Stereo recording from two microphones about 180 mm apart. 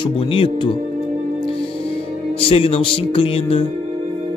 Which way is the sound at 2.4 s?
30° left (ahead or behind).